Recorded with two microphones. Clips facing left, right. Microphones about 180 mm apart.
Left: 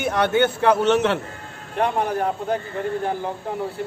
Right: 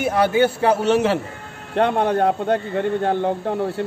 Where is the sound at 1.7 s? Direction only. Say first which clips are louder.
Right 4 dB; 70° right (ahead or behind).